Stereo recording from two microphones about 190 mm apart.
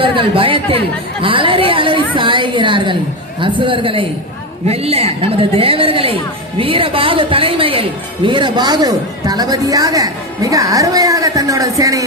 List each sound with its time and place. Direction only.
0.0 s a woman's voice: 30° right (ahead or behind)